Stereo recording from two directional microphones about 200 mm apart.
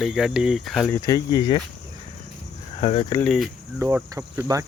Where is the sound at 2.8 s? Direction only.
30° left (ahead or behind).